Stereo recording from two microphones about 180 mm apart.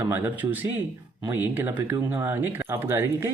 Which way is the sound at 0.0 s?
10° right (ahead or behind).